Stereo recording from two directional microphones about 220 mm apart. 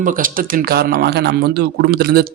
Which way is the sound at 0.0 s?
40° right (ahead or behind).